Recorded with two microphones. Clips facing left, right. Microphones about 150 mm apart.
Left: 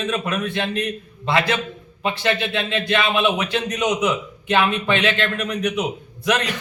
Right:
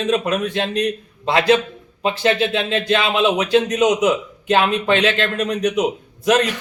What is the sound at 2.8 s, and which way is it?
A man's voice, 40° right (ahead or behind).